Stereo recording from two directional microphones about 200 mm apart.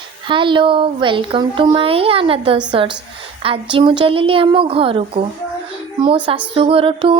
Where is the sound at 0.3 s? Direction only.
25° right (ahead or behind).